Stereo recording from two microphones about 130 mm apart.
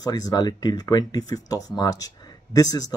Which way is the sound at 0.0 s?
30° left (ahead or behind).